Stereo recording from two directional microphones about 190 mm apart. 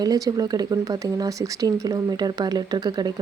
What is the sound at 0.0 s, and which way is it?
Speech, 20° right (ahead or behind).